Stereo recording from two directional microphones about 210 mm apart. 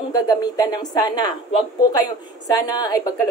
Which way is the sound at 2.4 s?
20° left (ahead or behind).